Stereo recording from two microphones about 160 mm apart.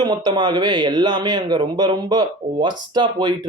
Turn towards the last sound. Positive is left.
turn(degrees=-25)  # may be behind; listen again after turning